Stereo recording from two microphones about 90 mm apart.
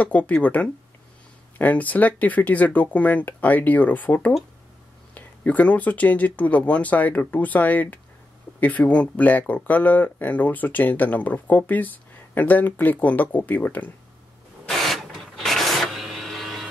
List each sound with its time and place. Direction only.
0.0 s speech: 15° left (ahead or behind)
14.7 s printer: centre (ahead or behind)